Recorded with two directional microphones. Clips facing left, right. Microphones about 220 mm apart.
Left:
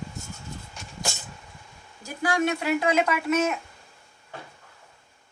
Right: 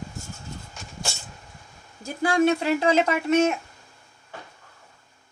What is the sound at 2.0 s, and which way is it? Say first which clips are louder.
Speech: right 4 dB; 30° right (ahead or behind).